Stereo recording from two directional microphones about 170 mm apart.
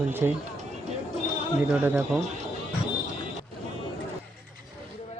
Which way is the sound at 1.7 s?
10° right (ahead or behind).